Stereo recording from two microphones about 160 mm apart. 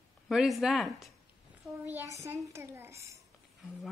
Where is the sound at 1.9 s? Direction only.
20° right (ahead or behind).